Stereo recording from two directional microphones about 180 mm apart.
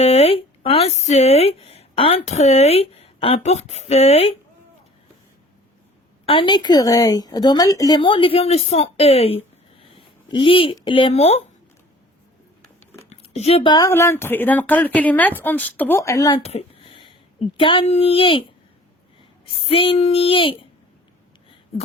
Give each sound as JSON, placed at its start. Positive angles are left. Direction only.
{"t": 0.0, "sound": "speech", "side_deg": 35}
{"t": 6.2, "sound": "a woman's voice", "side_deg": 30}
{"t": 12.6, "sound": "a sound", "side_deg": 10}
{"t": 13.1, "sound": "speech", "side_deg": 35}
{"t": 16.4, "sound": "a sound", "side_deg": 35}
{"t": 17.6, "sound": "a woman's voice", "side_deg": 30}
{"t": 19.6, "sound": "speech", "side_deg": 30}